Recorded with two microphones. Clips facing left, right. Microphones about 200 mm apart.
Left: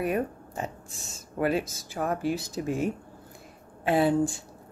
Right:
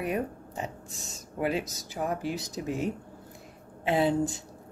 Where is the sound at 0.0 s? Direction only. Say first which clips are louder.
Left 3 dB; 20° right (ahead or behind).